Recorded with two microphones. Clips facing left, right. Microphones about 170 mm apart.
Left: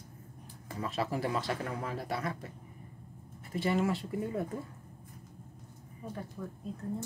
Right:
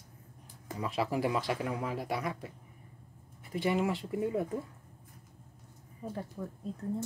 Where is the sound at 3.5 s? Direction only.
15° right (ahead or behind).